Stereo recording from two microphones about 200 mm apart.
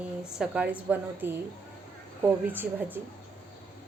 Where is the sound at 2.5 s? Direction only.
10° right (ahead or behind).